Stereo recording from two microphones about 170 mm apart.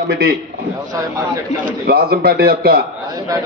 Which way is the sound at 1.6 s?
60° right (ahead or behind).